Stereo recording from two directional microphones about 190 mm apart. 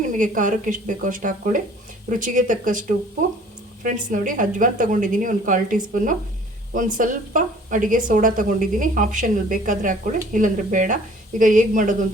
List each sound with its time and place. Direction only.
0.2 s a woman's voice: 45° right (ahead or behind)
3.8 s a woman's voice: 45° right (ahead or behind)